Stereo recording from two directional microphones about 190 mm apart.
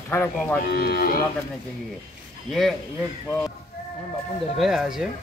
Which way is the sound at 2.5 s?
Centre (ahead or behind).